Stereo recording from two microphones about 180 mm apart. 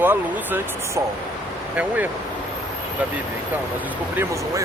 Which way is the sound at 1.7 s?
10° right (ahead or behind).